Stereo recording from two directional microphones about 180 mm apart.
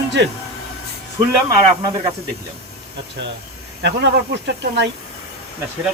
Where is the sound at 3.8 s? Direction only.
70° right (ahead or behind).